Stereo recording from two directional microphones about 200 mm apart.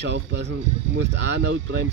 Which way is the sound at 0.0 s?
60° right (ahead or behind).